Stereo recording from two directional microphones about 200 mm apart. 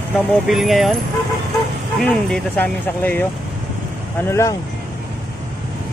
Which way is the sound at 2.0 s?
5° left (ahead or behind).